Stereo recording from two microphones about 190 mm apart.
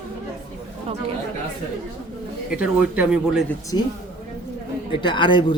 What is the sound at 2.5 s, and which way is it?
Speech, 5° right (ahead or behind).